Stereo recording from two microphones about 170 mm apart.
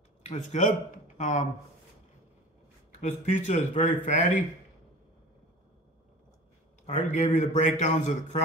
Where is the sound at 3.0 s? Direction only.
45° left (ahead or behind).